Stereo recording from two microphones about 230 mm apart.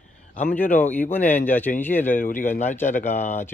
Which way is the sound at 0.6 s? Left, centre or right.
Centre.